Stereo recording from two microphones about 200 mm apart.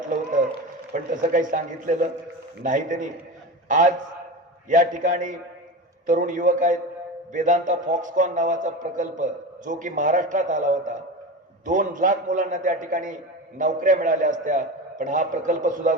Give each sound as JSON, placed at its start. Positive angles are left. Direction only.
{"t": 0.1, "sound": "run", "side_deg": -40}
{"t": 1.1, "sound": "a man's voice", "side_deg": -40}